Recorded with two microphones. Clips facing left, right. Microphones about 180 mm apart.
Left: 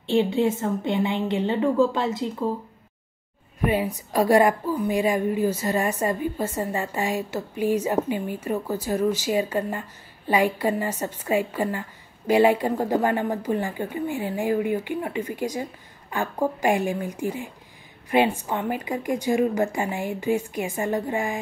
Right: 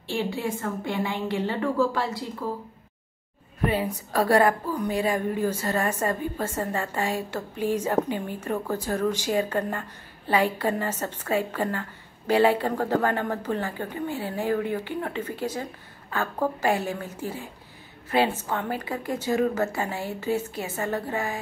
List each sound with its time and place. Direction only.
0.0 s a woman's voice: 20° left (ahead or behind)
3.6 s speech: 10° left (ahead or behind)